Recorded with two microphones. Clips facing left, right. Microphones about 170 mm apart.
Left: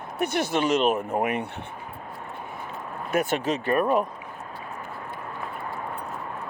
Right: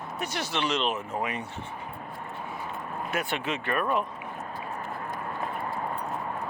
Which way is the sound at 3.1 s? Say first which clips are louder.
Left 7 dB; 45° left (ahead or behind).